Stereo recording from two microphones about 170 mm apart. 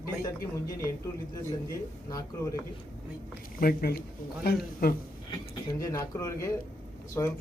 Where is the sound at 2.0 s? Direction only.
20° left (ahead or behind).